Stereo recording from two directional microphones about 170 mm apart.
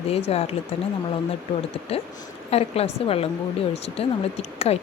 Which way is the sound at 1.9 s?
35° left (ahead or behind).